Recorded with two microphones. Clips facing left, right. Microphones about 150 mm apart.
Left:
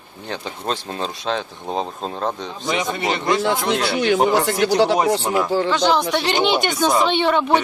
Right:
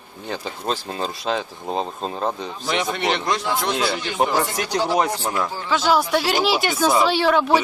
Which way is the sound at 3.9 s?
85° left.